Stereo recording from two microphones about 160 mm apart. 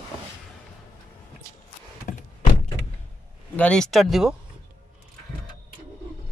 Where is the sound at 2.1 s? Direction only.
50° left (ahead or behind).